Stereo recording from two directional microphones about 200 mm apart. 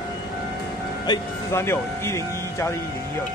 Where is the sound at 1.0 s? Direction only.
15° left (ahead or behind).